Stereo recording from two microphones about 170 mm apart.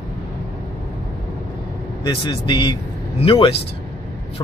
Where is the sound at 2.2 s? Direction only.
30° left (ahead or behind).